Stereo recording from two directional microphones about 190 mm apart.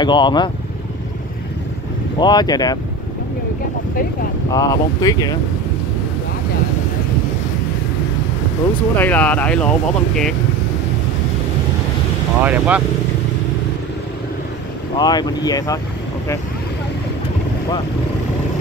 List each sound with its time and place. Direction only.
0.0 s speech: 25° left (ahead or behind)
2.1 s speech: 20° left (ahead or behind)
4.5 s speech: 20° left (ahead or behind)
8.9 s speech: 10° left (ahead or behind)
12.4 s speech: 5° right (ahead or behind)
15.0 s speech: 20° left (ahead or behind)